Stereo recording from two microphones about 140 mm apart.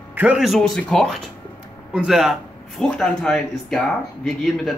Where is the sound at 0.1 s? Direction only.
10° right (ahead or behind).